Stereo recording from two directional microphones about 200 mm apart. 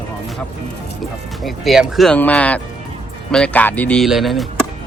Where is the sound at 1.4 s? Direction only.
Centre (ahead or behind).